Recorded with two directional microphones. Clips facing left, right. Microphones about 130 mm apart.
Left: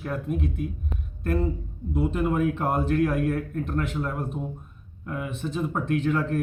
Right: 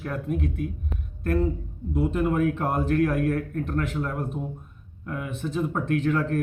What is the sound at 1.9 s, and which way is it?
Speech, 15° left (ahead or behind).